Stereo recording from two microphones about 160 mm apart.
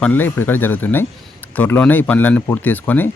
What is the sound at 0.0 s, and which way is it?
Speech, 10° left (ahead or behind).